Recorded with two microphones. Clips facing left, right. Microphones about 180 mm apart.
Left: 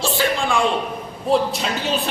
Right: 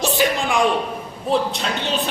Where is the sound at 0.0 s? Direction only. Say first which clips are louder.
Right 1 dB; 20° right (ahead or behind).